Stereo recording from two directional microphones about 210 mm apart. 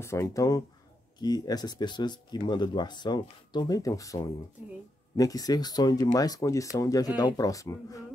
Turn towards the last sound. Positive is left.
turn(degrees=15)  # may be behind; listen again after turning